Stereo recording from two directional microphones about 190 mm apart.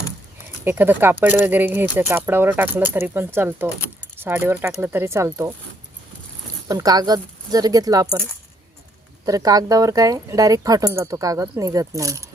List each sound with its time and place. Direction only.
0.6 s speech: 10° right (ahead or behind)
6.7 s speech: 20° right (ahead or behind)
9.2 s speech: 20° right (ahead or behind)